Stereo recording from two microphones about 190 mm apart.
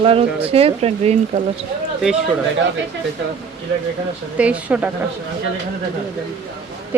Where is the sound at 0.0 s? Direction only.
30° right (ahead or behind).